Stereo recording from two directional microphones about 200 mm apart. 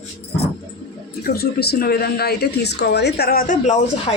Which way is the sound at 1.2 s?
50° left (ahead or behind).